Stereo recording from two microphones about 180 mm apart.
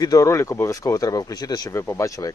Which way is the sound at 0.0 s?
20° left (ahead or behind).